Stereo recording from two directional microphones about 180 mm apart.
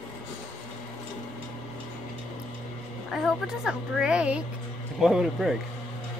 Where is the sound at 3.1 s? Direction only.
Centre (ahead or behind).